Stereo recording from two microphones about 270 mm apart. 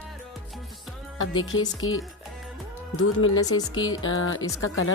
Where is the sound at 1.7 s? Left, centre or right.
Left.